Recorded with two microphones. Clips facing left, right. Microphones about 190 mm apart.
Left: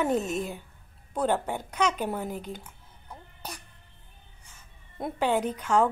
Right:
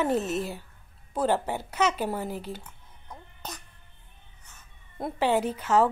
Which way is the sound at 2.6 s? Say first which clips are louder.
Even; 10° left (ahead or behind).